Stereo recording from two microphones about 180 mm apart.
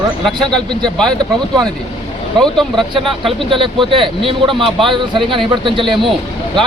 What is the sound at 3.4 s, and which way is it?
Speech, 25° right (ahead or behind).